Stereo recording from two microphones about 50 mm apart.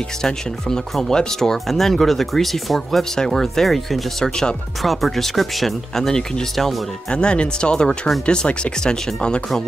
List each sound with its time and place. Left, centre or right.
0.2 s speech: centre
4.2 s speech: centre
4.8 s speech: centre
7.1 s speech: centre